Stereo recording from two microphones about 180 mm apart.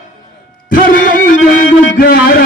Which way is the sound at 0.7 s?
50° left (ahead or behind).